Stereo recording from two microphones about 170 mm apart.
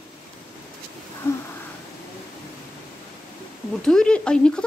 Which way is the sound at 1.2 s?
15° left (ahead or behind).